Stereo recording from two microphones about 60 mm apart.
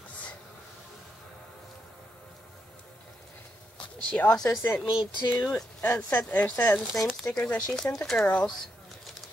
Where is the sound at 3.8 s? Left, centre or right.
Left.